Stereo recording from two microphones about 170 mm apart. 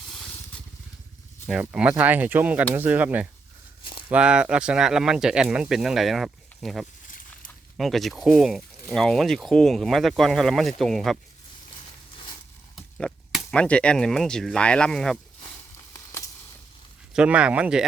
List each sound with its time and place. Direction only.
0.1 s vehicle: centre (ahead or behind)
1.5 s speech: 5° right (ahead or behind)
12.1 s a sound: 25° left (ahead or behind)
12.7 s speech: centre (ahead or behind)
15.9 s a sound: 20° left (ahead or behind)
17.2 s speech: 5° right (ahead or behind)